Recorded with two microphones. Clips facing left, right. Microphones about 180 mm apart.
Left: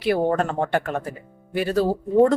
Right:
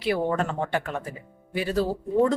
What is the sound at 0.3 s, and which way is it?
Speech, 45° left (ahead or behind).